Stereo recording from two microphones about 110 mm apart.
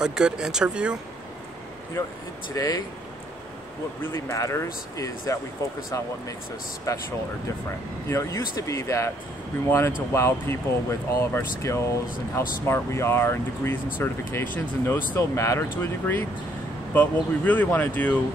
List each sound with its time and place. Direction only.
0.0 s speech: 5° right (ahead or behind)
2.5 s speech: 30° left (ahead or behind)
4.0 s speech: 25° left (ahead or behind)
6.9 s speech: 30° left (ahead or behind)
8.1 s speech: 30° left (ahead or behind)